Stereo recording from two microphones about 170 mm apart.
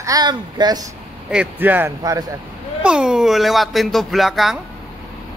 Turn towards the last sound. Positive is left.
turn(degrees=0)  # may be behind; listen again after turning